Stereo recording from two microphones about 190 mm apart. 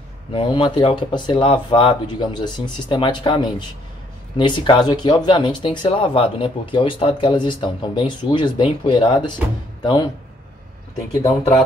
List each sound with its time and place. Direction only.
0.3 s speech: 25° left (ahead or behind)
11.2 s speech: 15° left (ahead or behind)